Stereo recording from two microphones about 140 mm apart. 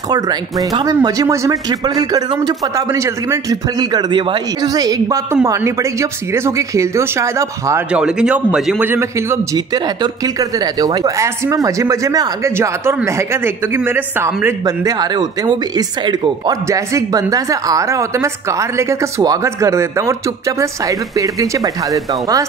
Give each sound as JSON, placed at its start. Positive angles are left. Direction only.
{"t": 0.1, "sound": "a man's voice", "side_deg": -30}
{"t": 7.9, "sound": "a man's voice", "side_deg": -5}
{"t": 8.8, "sound": "a man's voice", "side_deg": -20}